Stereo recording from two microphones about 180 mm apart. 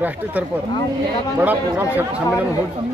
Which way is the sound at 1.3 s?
10° right (ahead or behind).